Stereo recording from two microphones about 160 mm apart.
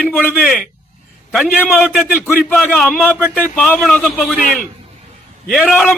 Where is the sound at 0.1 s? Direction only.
10° left (ahead or behind).